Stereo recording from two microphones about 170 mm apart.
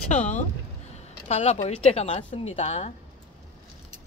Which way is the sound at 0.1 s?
45° left (ahead or behind).